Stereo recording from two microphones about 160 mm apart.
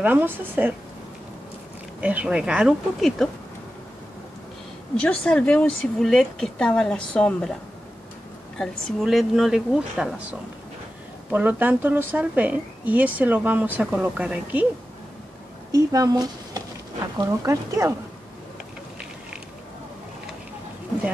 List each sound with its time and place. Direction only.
0.0 s a woman's voice: 10° right (ahead or behind)
2.0 s a woman's voice: 10° right (ahead or behind)
4.9 s a woman's voice: 5° left (ahead or behind)
8.5 s a woman's voice: centre (ahead or behind)
11.2 s a woman's voice: 10° right (ahead or behind)
15.7 s speech: 20° right (ahead or behind)